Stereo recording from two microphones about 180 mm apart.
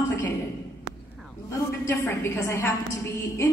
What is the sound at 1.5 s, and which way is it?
A woman's voice, 15° left (ahead or behind).